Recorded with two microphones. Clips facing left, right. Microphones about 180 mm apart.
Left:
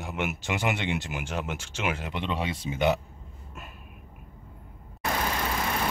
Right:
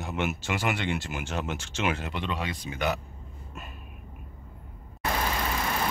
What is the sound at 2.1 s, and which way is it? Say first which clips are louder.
Speech: left 2 dB; 25° left (ahead or behind).